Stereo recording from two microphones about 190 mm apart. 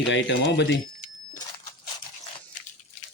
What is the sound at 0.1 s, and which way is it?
Speech, 75° left (ahead or behind).